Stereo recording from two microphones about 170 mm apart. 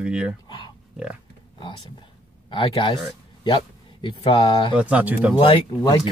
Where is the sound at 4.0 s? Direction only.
30° left (ahead or behind).